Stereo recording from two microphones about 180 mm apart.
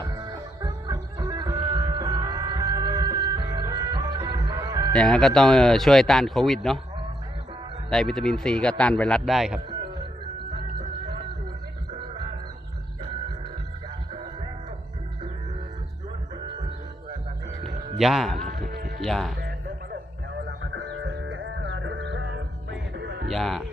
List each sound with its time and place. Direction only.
0.0 s music: 20° right (ahead or behind)
4.9 s speech: 5° left (ahead or behind)
7.9 s speech: centre (ahead or behind)
17.9 s a man's voice: centre (ahead or behind)
18.3 s music: 50° right (ahead or behind)
18.7 s music: 60° right (ahead or behind)
19.0 s speech: centre (ahead or behind)
19.4 s music: 60° right (ahead or behind)
20.7 s music: 80° right
23.0 s music: 70° right (ahead or behind)
23.3 s speech: centre (ahead or behind)